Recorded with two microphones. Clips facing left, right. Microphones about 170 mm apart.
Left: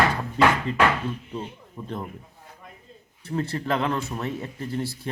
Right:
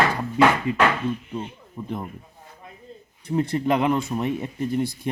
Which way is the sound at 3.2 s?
15° right (ahead or behind).